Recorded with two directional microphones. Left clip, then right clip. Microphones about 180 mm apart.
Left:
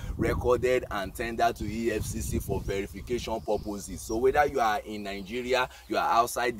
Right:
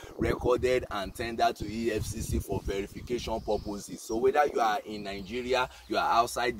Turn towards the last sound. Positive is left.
turn(degrees=10)  # may be behind; listen again after turning